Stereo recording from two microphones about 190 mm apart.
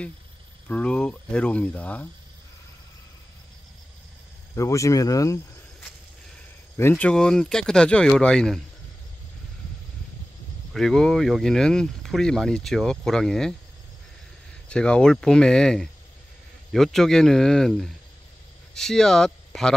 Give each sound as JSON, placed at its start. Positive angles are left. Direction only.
{"t": 0.7, "sound": "speech", "side_deg": 5}
{"t": 4.6, "sound": "speech", "side_deg": 15}
{"t": 6.8, "sound": "speech", "side_deg": 10}
{"t": 10.7, "sound": "speech", "side_deg": 0}
{"t": 14.7, "sound": "speech", "side_deg": 5}